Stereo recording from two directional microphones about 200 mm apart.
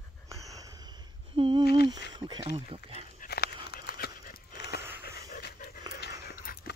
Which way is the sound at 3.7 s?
50° left (ahead or behind).